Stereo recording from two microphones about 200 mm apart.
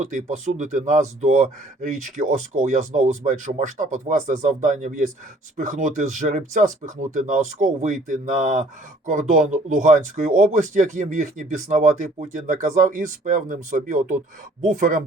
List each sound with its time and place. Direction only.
0.0 s speech: 35° right (ahead or behind)